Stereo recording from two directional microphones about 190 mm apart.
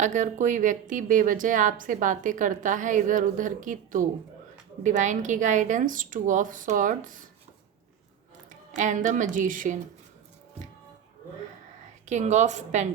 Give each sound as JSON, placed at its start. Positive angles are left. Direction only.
{"t": 0.0, "sound": "a woman's voice", "side_deg": -40}
{"t": 8.4, "sound": "speech", "side_deg": -40}
{"t": 12.0, "sound": "speech", "side_deg": -40}